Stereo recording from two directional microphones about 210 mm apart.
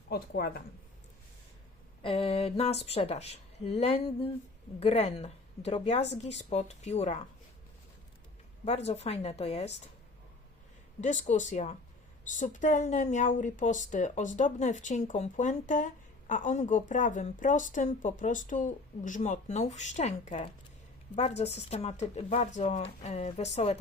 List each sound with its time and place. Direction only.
0.1 s speech: 50° left (ahead or behind)
2.0 s speech: 25° left (ahead or behind)
8.6 s speech: 30° left (ahead or behind)
11.0 s speech: 35° left (ahead or behind)